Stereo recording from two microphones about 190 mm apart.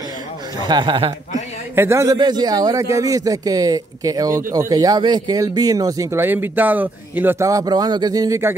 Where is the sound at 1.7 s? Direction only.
15° right (ahead or behind).